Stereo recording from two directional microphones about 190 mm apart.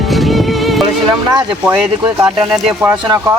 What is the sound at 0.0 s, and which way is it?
Music, centre (ahead or behind).